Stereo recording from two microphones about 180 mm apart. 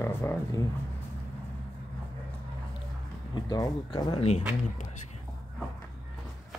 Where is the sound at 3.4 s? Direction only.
20° left (ahead or behind).